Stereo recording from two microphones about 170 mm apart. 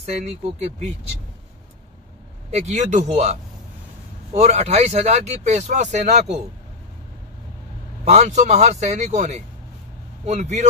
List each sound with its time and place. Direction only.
0.0 s speech: 40° right (ahead or behind)
2.5 s speech: 45° right (ahead or behind)
8.0 s speech: 40° right (ahead or behind)